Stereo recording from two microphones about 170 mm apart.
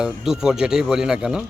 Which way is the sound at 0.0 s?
5° right (ahead or behind).